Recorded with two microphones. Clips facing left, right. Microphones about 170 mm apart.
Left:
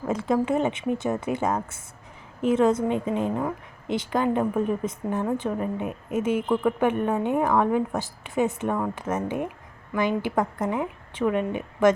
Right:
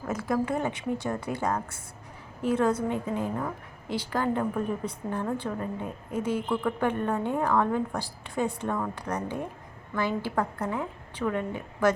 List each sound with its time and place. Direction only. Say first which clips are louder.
0.1 s a woman's voice: left 4 dB; 25° left (ahead or behind)